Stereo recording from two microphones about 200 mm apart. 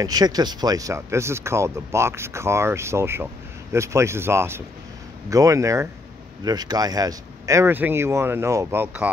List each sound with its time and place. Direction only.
0.0 s speech: 20° right (ahead or behind)